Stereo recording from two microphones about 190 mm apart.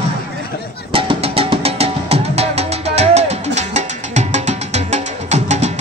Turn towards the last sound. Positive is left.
turn(degrees=-35)  # may be behind; listen again after turning